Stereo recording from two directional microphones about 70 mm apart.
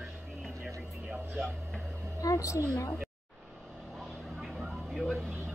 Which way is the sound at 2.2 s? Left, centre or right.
Left.